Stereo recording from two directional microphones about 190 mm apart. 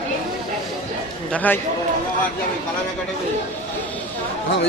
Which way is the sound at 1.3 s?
10° left (ahead or behind).